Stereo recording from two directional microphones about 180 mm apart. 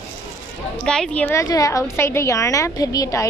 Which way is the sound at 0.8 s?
5° left (ahead or behind).